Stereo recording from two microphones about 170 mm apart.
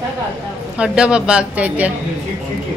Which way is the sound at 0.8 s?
5° right (ahead or behind).